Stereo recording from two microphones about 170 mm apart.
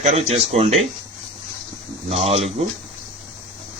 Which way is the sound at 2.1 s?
35° right (ahead or behind).